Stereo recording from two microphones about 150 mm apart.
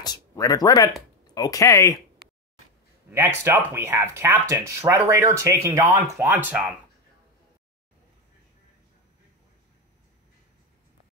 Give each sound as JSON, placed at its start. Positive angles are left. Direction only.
{"t": 0.0, "sound": "speech", "side_deg": 25}
{"t": 3.1, "sound": "speech", "side_deg": -15}